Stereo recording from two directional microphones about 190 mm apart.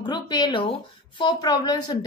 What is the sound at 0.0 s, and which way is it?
A woman's voice, 20° left (ahead or behind).